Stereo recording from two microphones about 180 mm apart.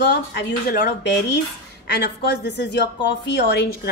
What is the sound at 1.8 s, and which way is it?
A woman's voice, 65° left (ahead or behind).